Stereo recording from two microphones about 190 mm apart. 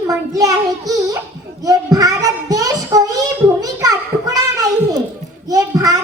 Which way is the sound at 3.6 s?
20° right (ahead or behind).